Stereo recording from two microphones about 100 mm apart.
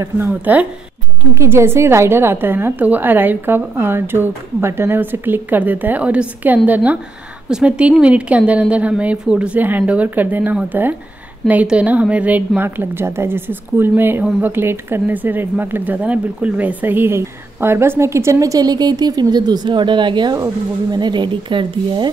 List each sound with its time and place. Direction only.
0.3 s a woman's voice: 15° right (ahead or behind)
1.3 s a woman's voice: 25° right (ahead or behind); by 22.1 s 55° right (ahead or behind)